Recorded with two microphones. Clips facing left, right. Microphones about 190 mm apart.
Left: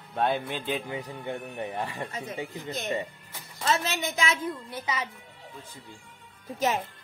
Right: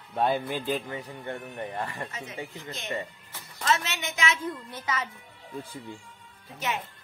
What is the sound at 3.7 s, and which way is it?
Speech, 35° left (ahead or behind).